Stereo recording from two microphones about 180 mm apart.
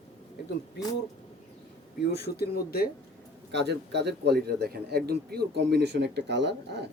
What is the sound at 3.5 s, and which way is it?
A man's voice, 70° right (ahead or behind).